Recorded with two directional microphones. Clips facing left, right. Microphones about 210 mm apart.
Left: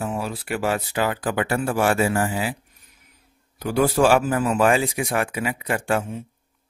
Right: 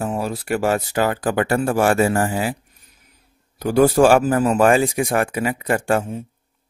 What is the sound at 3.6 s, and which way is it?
Speech, 45° right (ahead or behind).